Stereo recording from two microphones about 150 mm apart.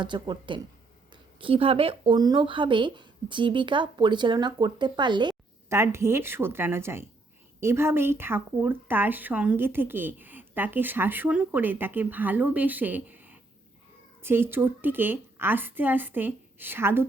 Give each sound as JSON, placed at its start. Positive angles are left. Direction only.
{"t": 0.0, "sound": "speech", "side_deg": -30}
{"t": 5.6, "sound": "speech", "side_deg": -20}